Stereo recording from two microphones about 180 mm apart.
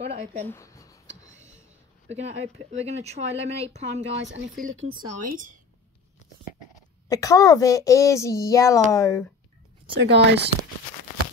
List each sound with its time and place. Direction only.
0.0 s speech: 35° right (ahead or behind)
0.5 s a sound: 15° left (ahead or behind)
2.0 s speech: 35° right (ahead or behind)
4.9 s speech: 45° right (ahead or behind)
7.1 s a woman's voice: 20° left (ahead or behind)
9.9 s speech: 70° right (ahead or behind)